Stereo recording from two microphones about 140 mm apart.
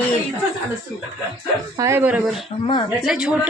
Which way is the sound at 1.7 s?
20° right (ahead or behind).